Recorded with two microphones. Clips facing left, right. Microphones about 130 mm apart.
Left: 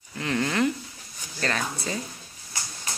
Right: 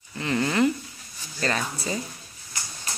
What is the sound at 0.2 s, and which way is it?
Speech, centre (ahead or behind).